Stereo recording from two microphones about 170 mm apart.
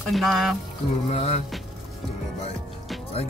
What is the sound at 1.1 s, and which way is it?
Speech, 40° left (ahead or behind).